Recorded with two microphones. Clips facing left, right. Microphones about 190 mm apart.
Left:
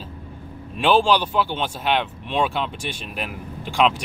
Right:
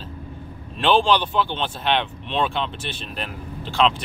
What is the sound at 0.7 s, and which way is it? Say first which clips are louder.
Speech: left 1 dB; 10° left (ahead or behind).